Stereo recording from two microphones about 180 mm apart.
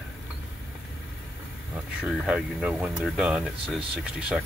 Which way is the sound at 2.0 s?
Centre (ahead or behind).